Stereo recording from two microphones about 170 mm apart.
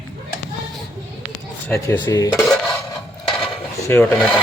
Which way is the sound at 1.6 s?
15° left (ahead or behind).